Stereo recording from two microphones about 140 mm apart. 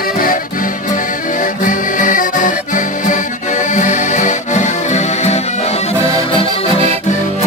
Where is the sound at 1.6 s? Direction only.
70° left (ahead or behind); by 5.4 s 55° left (ahead or behind).